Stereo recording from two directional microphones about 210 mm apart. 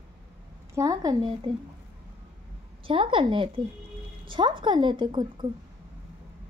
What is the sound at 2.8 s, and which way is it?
A woman's voice, 25° right (ahead or behind).